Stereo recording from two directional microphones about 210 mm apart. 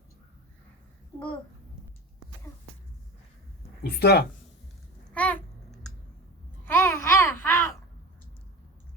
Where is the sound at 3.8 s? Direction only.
50° left (ahead or behind).